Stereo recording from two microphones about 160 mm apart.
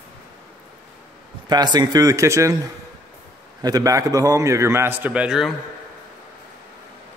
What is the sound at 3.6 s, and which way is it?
A man's voice, 20° right (ahead or behind).